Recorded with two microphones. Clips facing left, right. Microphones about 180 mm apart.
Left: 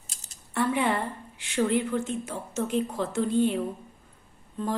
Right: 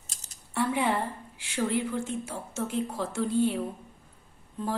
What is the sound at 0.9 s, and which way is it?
A woman's voice, 10° right (ahead or behind).